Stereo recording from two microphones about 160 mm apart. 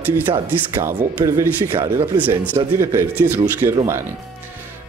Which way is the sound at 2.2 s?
15° right (ahead or behind).